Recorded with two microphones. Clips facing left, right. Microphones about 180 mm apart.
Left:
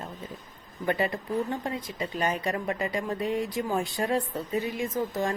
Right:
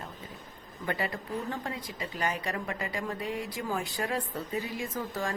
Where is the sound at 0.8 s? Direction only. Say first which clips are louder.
Left 6 dB; 25° left (ahead or behind).